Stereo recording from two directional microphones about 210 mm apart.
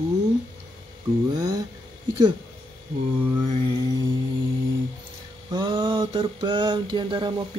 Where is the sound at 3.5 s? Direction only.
25° right (ahead or behind).